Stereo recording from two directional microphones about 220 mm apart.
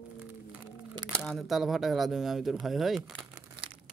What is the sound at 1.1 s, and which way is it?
Speech, centre (ahead or behind).